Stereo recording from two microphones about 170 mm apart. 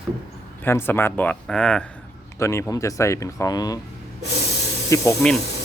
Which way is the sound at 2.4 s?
15° left (ahead or behind).